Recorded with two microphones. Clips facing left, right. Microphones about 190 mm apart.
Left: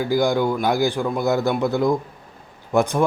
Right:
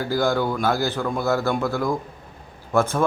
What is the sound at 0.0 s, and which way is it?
Speech, 15° left (ahead or behind).